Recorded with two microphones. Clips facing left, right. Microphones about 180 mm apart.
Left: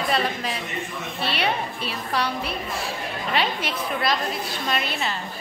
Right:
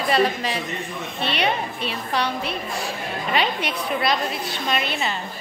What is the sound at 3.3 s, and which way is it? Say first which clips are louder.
A woman's voice: right 2 dB; centre (ahead or behind).